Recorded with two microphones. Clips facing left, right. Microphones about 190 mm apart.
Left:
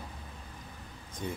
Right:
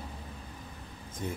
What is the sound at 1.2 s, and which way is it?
Speech, 5° right (ahead or behind).